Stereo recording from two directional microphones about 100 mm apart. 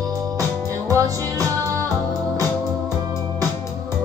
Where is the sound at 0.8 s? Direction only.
35° right (ahead or behind).